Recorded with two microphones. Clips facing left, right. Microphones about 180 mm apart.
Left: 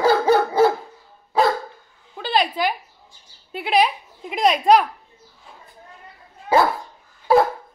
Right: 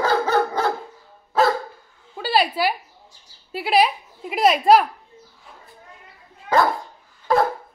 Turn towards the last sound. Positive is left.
turn(degrees=5)  # may be behind; listen again after turning